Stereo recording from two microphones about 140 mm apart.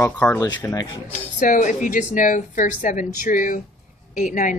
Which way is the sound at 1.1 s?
70° left (ahead or behind).